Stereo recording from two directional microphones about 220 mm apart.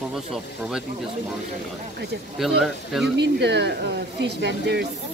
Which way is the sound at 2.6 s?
Centre (ahead or behind).